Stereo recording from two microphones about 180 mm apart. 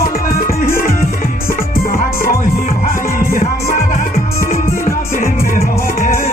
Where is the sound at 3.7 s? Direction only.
50° left (ahead or behind).